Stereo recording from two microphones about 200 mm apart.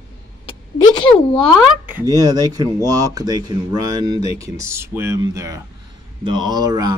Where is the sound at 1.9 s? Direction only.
15° right (ahead or behind).